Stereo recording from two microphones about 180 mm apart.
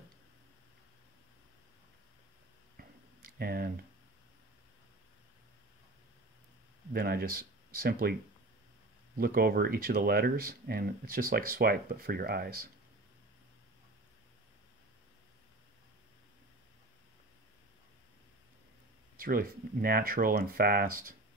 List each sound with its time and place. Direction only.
3.3 s speech: 60° right (ahead or behind)
6.9 s speech: 55° right (ahead or behind)
19.1 s speech: 55° right (ahead or behind)